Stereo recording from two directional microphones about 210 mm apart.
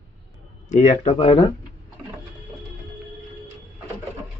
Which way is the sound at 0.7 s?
35° left (ahead or behind).